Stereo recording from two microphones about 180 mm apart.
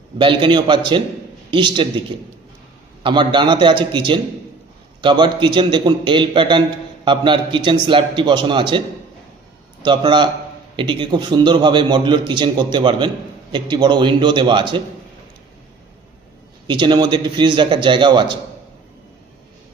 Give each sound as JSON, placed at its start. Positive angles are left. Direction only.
{"t": 0.2, "sound": "a man's voice", "side_deg": -30}
{"t": 3.0, "sound": "a man's voice", "side_deg": -25}
{"t": 9.8, "sound": "a man's voice", "side_deg": -25}
{"t": 16.6, "sound": "a man's voice", "side_deg": -25}